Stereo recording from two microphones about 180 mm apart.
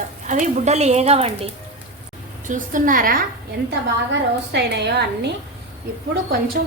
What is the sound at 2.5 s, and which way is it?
Speech, 45° right (ahead or behind).